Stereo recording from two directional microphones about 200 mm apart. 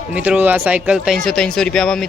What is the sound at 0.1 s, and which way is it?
Speech, 5° right (ahead or behind).